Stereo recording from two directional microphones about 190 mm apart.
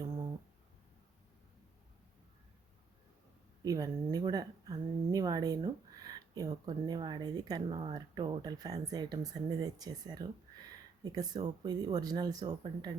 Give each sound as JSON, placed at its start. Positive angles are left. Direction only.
{"t": 3.6, "sound": "speech", "side_deg": -20}